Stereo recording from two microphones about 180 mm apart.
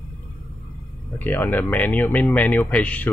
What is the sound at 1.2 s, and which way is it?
A man's voice, 10° left (ahead or behind).